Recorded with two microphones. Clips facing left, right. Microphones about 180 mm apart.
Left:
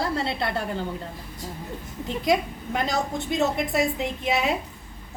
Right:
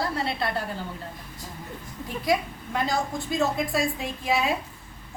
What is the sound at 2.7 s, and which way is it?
A woman's voice, 20° left (ahead or behind).